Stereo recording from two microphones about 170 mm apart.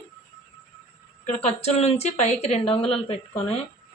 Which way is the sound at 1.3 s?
40° left (ahead or behind).